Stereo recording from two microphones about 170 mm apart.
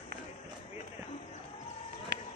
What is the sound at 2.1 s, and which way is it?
Run, 90° right.